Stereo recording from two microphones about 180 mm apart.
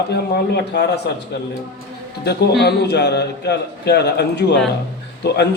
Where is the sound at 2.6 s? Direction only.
65° left (ahead or behind).